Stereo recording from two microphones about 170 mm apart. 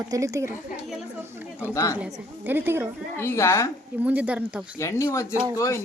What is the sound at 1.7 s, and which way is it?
Speech, 20° left (ahead or behind).